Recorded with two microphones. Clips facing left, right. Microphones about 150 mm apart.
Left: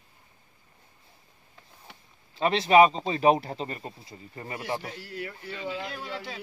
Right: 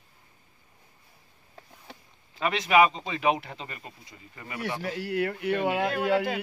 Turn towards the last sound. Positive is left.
turn(degrees=-65)  # may be behind; listen again after turning